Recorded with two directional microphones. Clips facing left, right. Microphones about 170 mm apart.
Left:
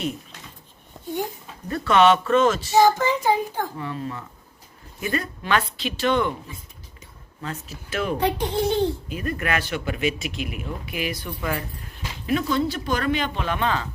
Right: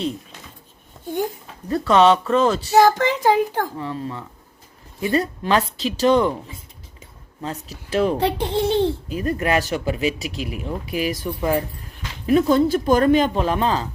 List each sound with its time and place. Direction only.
1.7 s a child's voice: 30° right (ahead or behind)
2.7 s child singing: 80° right
3.8 s a child's voice: 30° right (ahead or behind)
7.4 s a child's voice: 35° right (ahead or behind)
11.3 s speech: 30° right (ahead or behind)
12.2 s a child's voice: 40° right (ahead or behind)